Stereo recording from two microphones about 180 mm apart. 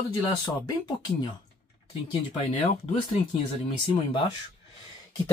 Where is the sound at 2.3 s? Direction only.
30° left (ahead or behind).